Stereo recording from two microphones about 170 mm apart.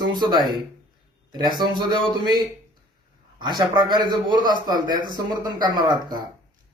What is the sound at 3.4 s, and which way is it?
A man's voice, 25° right (ahead or behind).